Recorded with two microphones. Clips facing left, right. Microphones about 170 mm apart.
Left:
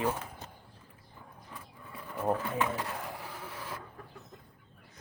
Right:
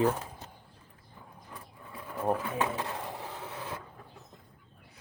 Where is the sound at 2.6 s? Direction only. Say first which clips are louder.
Right 1 dB; 25° right (ahead or behind).